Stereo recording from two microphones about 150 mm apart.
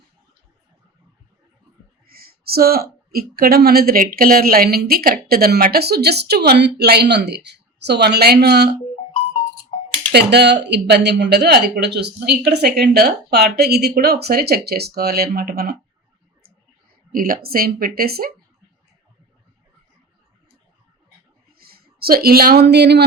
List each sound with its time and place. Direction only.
2.0 s speech: 90° right
10.1 s speech: 90° right
17.1 s speech: 70° right (ahead or behind); by 18.3 s 90° right
21.6 s speech: 90° right